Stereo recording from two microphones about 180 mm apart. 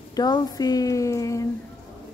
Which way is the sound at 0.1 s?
20° left (ahead or behind).